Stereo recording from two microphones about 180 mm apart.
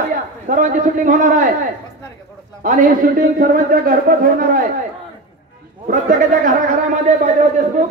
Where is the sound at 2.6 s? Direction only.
45° right (ahead or behind).